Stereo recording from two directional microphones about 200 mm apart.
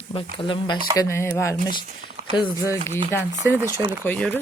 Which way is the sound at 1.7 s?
35° right (ahead or behind).